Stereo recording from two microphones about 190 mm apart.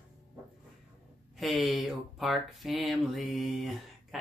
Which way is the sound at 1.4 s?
Centre (ahead or behind).